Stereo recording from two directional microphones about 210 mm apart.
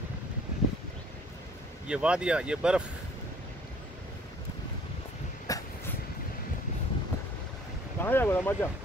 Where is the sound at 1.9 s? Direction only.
5° right (ahead or behind).